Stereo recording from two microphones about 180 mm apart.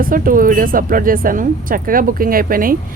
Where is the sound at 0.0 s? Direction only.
50° right (ahead or behind).